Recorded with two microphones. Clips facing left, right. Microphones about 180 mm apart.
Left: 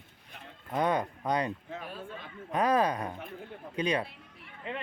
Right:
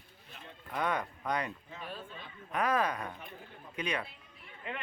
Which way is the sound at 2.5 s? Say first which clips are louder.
Left 4 dB; 35° left (ahead or behind).